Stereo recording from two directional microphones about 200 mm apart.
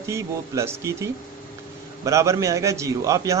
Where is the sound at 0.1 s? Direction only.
15° right (ahead or behind).